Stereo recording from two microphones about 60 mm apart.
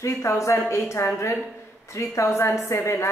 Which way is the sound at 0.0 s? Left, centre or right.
Left.